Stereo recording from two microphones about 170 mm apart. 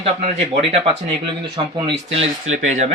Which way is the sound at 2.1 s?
40° right (ahead or behind).